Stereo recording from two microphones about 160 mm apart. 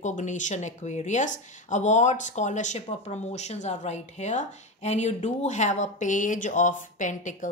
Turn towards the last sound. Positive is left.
turn(degrees=50)  # may be behind; listen again after turning